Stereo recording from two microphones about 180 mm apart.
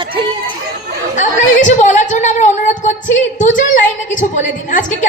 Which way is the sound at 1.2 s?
45° left (ahead or behind).